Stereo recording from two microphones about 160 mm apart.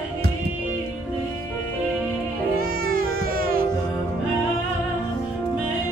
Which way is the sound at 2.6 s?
65° right (ahead or behind).